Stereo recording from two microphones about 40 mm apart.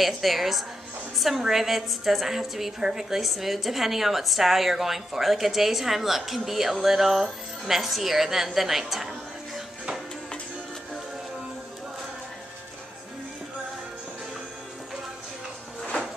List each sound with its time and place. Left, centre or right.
0.0 s a woman's voice: centre
1.1 s a sound: centre
1.4 s a woman's voice: centre